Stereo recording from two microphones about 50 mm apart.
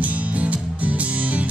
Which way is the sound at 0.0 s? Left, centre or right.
Right.